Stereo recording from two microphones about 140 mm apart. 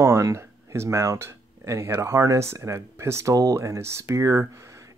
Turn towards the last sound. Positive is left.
turn(degrees=-20)  # may be behind; listen again after turning